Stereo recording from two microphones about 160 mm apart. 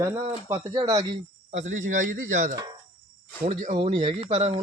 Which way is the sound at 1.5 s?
50° right (ahead or behind).